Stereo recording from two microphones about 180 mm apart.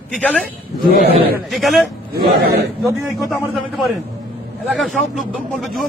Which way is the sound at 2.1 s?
60° right (ahead or behind).